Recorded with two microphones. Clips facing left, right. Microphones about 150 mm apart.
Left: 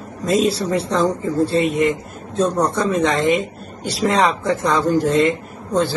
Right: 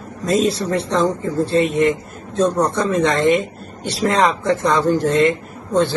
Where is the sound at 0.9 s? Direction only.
10° left (ahead or behind).